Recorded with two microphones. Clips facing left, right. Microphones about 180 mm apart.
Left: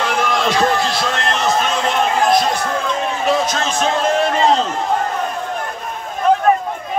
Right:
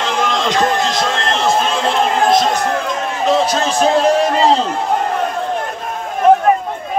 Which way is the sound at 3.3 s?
35° right (ahead or behind).